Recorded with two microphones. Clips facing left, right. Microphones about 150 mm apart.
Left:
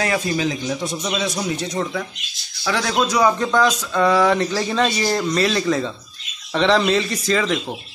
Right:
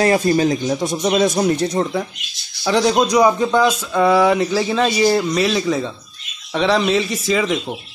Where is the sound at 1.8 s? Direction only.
40° right (ahead or behind).